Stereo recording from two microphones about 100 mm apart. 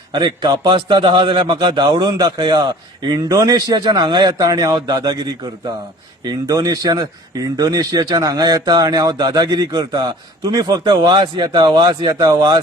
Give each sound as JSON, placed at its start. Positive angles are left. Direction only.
{"t": 0.1, "sound": "a man's voice", "side_deg": -45}